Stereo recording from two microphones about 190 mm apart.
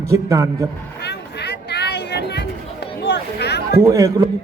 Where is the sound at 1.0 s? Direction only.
60° left (ahead or behind).